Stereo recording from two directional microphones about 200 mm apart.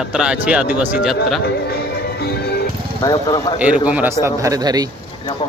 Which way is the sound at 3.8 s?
10° right (ahead or behind).